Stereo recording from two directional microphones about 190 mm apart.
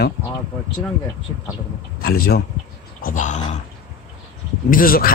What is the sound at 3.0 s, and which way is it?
Speech, 40° left (ahead or behind).